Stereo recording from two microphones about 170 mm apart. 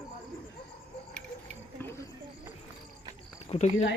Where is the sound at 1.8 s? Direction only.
15° left (ahead or behind).